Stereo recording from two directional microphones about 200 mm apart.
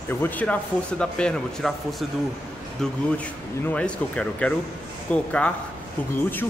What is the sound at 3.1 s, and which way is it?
A man's voice, 5° left (ahead or behind).